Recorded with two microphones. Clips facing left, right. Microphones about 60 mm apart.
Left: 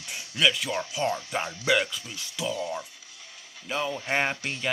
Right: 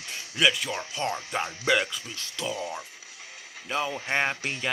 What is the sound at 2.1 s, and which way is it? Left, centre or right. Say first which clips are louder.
Speech: left 1 dB; centre.